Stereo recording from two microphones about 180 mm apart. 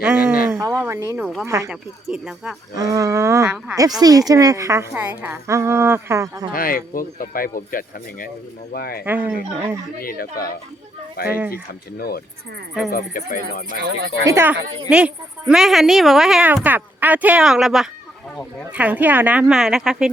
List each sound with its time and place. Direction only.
0.0 s a woman's voice: 5° right (ahead or behind)
1.2 s a woman's voice: centre (ahead or behind)
1.5 s a woman's voice: 15° right (ahead or behind)
1.7 s a woman's voice: 5° right (ahead or behind)
2.7 s a woman's voice: 20° right (ahead or behind)
4.0 s a woman's voice: 20° right (ahead or behind)
6.5 s speech: 50° left (ahead or behind)
9.0 s a woman's voice: 10° right (ahead or behind)
10.0 s speech: 55° left (ahead or behind)
11.3 s a woman's voice: 10° right (ahead or behind)
11.5 s speech: 60° left (ahead or behind)
13.7 s speech: 55° right (ahead or behind)
14.3 s a woman's voice: 15° right (ahead or behind)